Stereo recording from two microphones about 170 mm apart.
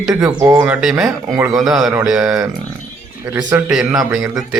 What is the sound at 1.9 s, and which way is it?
Speech, 5° right (ahead or behind).